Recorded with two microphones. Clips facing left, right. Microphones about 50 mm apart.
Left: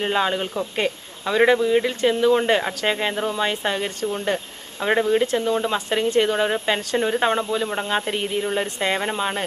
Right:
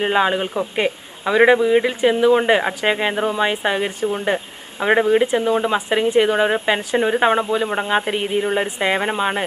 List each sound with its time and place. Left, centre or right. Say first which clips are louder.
0.0 s a man's voice: right 4 dB; right